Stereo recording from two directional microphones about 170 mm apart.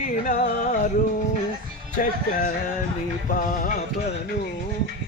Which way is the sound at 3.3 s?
55° left (ahead or behind).